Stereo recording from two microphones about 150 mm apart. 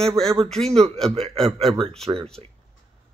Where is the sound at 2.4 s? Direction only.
40° right (ahead or behind).